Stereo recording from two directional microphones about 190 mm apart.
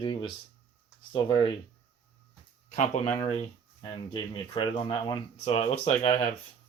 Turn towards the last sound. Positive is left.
turn(degrees=35)  # may be behind; listen again after turning